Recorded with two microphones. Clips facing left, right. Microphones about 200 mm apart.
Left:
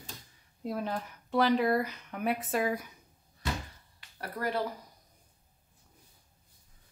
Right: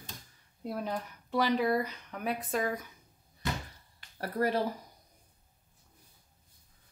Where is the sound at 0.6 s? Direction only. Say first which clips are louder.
Left 1 dB; centre (ahead or behind).